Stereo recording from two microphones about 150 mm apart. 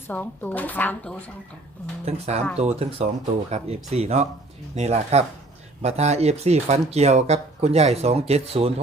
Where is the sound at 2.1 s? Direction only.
45° right (ahead or behind).